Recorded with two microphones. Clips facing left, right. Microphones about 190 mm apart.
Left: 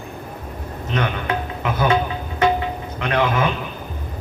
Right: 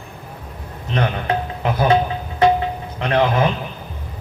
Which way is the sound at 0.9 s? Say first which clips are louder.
Right 2 dB; 35° right (ahead or behind).